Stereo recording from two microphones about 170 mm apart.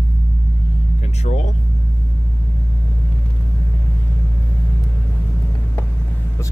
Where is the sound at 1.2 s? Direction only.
45° left (ahead or behind).